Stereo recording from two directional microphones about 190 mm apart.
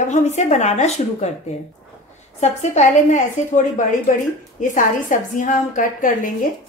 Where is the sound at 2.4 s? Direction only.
35° left (ahead or behind).